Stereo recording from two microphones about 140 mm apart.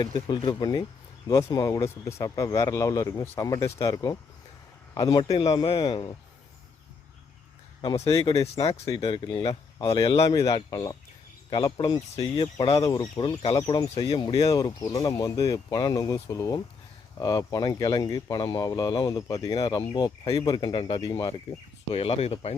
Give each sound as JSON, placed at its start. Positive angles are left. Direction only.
{"t": 0.0, "sound": "speech", "side_deg": 30}
{"t": 8.3, "sound": "speech", "side_deg": 25}
{"t": 9.0, "sound": "speech", "side_deg": 35}
{"t": 21.9, "sound": "speech", "side_deg": 45}